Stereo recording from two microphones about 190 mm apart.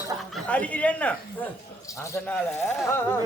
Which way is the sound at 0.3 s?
5° left (ahead or behind).